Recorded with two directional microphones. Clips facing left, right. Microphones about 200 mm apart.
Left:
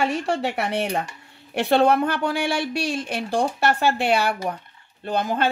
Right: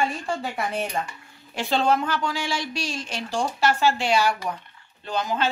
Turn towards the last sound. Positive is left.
turn(degrees=55)  # may be behind; listen again after turning